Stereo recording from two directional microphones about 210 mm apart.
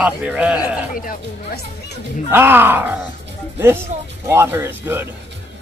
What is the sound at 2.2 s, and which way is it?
Speech, 10° right (ahead or behind).